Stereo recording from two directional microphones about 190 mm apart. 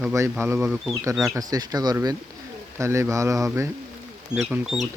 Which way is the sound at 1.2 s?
20° right (ahead or behind).